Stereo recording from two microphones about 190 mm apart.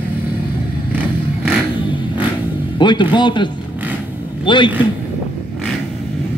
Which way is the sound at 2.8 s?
25° left (ahead or behind).